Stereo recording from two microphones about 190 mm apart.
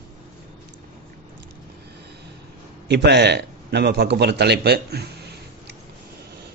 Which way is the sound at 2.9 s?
60° right (ahead or behind).